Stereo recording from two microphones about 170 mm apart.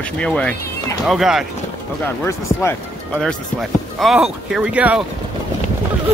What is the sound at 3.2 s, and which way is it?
Speech, centre (ahead or behind).